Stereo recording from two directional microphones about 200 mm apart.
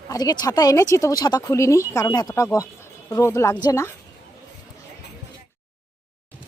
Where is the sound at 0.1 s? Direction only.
20° left (ahead or behind).